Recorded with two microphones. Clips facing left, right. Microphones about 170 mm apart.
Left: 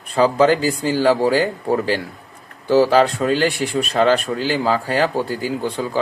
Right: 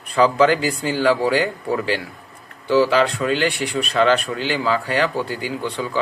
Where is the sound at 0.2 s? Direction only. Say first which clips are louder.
Left 1 dB; 30° left (ahead or behind).